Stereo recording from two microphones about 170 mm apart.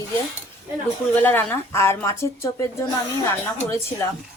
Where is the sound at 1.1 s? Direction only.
10° left (ahead or behind).